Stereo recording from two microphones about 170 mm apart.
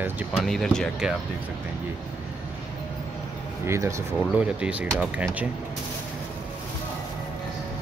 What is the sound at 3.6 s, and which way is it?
Speech, 15° right (ahead or behind).